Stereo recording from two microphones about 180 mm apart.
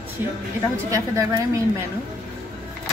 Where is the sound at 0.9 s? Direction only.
20° right (ahead or behind).